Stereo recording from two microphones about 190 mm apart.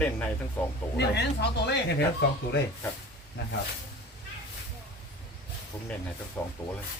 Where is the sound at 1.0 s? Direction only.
60° left (ahead or behind).